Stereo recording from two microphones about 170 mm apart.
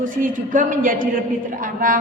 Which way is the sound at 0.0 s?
55° right (ahead or behind).